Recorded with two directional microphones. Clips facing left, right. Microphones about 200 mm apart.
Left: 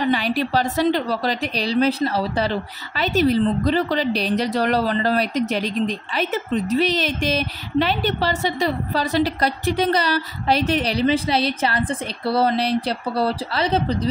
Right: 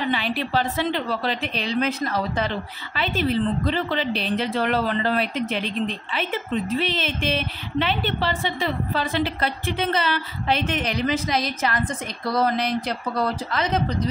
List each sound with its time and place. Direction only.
0.1 s a woman's voice: 40° left (ahead or behind)